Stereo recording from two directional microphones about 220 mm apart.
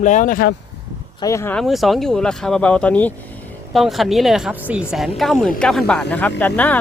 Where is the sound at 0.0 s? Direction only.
35° left (ahead or behind).